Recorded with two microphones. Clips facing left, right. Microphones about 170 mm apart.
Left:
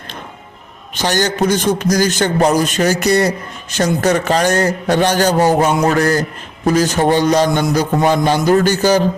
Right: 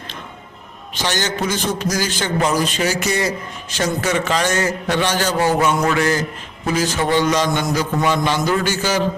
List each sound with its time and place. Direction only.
1.0 s a man's voice: 40° left (ahead or behind)